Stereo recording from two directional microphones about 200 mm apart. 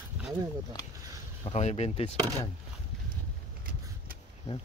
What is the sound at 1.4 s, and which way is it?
Speech, 35° left (ahead or behind).